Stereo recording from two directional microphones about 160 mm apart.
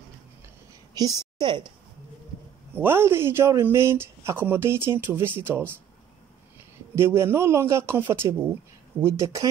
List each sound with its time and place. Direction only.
0.9 s a woman's voice: 25° right (ahead or behind)
2.7 s speech: 15° right (ahead or behind)
7.0 s speech: 15° right (ahead or behind)